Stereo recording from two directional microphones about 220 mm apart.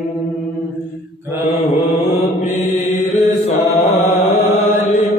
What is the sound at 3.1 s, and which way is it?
Chant, 30° left (ahead or behind).